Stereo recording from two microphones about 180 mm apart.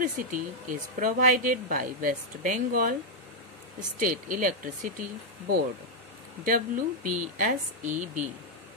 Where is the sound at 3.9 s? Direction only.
50° right (ahead or behind).